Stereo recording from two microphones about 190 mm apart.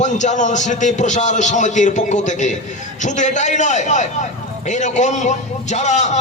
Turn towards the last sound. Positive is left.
turn(degrees=40)  # may be behind; listen again after turning